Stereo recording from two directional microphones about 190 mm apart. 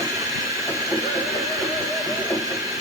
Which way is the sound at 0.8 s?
Centre (ahead or behind).